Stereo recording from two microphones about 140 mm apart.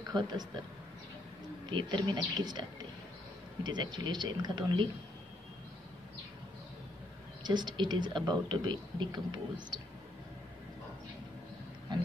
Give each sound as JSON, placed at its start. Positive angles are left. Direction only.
{"t": 0.1, "sound": "speech", "side_deg": -30}
{"t": 1.7, "sound": "a woman's voice", "side_deg": -35}
{"t": 3.6, "sound": "a woman's voice", "side_deg": -30}
{"t": 7.4, "sound": "a woman's voice", "side_deg": -30}